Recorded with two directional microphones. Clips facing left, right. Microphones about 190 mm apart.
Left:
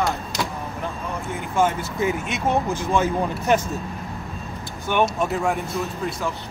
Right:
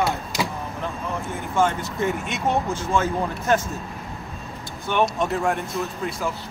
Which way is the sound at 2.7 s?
15° left (ahead or behind).